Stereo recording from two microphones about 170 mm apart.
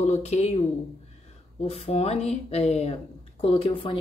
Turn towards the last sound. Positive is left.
turn(degrees=30)  # may be behind; listen again after turning